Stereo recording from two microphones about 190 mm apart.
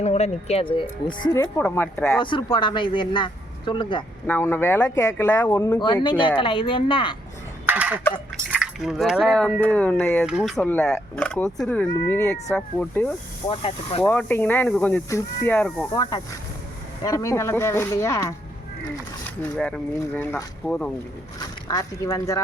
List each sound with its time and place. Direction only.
0.0 s speech: 35° left (ahead or behind); by 2.2 s 5° left (ahead or behind)
2.2 s speech: 25° left (ahead or behind)
4.3 s speech: 10° left (ahead or behind)
7.7 s fowl: 10° right (ahead or behind)
8.4 s speech: 5° right (ahead or behind)
10.3 s speech: 5° right (ahead or behind)
10.6 s speech: 5° left (ahead or behind)
13.5 s speech: 30° left (ahead or behind)
14.0 s speech: 5° left (ahead or behind)
15.9 s speech: 20° left (ahead or behind)
19.5 s speech: 5° left (ahead or behind)
21.7 s speech: 20° left (ahead or behind)